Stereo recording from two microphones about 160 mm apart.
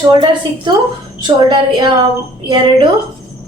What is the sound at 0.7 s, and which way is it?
Speech, 30° right (ahead or behind).